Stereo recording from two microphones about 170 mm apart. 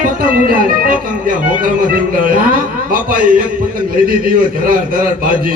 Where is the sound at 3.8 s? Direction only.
55° right (ahead or behind).